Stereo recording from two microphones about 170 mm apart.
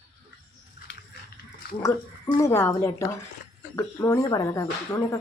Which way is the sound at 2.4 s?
15° left (ahead or behind).